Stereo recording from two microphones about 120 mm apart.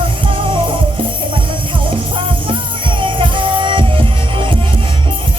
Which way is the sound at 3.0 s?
45° right (ahead or behind).